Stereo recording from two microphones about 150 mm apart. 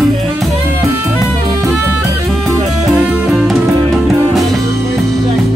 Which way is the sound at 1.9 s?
Centre (ahead or behind).